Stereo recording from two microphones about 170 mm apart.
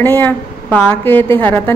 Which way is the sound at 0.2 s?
10° left (ahead or behind).